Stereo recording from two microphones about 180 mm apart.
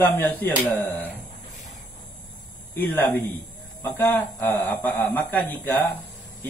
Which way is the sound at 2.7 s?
10° left (ahead or behind).